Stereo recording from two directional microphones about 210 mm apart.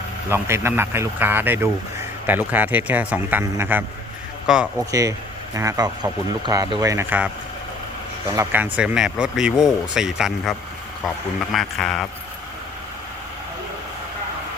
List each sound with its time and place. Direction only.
0.3 s speech: 10° right (ahead or behind)
4.8 s speech: 15° right (ahead or behind)
8.4 s a man's voice: 10° right (ahead or behind)